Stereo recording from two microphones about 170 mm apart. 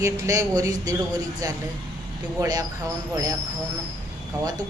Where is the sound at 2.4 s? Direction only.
20° right (ahead or behind).